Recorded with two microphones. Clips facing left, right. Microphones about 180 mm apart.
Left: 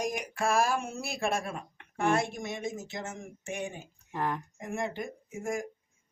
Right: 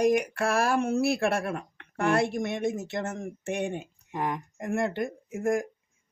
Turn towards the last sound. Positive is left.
turn(degrees=-60)  # may be behind; listen again after turning